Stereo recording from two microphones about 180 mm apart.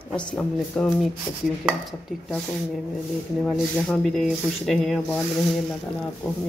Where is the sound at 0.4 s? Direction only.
10° left (ahead or behind).